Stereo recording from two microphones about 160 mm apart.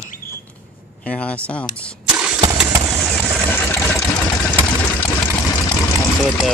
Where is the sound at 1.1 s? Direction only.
10° left (ahead or behind).